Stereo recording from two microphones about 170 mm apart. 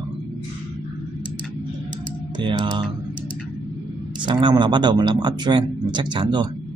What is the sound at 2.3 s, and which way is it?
Speech, 25° right (ahead or behind).